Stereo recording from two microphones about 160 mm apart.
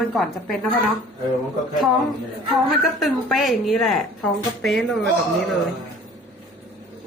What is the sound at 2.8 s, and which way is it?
Speech, centre (ahead or behind).